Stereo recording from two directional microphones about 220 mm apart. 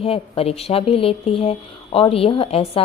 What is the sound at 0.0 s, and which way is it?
A woman's voice, 25° left (ahead or behind).